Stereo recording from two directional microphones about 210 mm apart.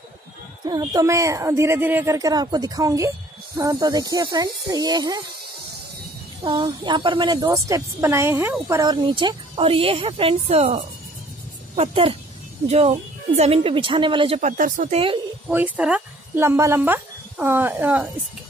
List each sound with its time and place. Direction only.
0.7 s a woman's voice: 20° right (ahead or behind)
6.4 s a woman's voice: 20° right (ahead or behind); by 15.0 s 35° right (ahead or behind)
15.4 s speech: 10° right (ahead or behind)